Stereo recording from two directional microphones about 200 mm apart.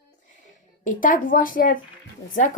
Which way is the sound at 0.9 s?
40° left (ahead or behind).